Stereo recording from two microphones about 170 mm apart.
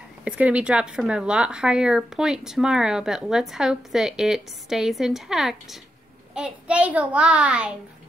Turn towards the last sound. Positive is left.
turn(degrees=-5)  # may be behind; listen again after turning